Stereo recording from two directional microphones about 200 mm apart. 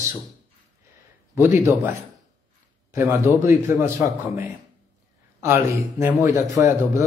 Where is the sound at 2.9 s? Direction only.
15° right (ahead or behind).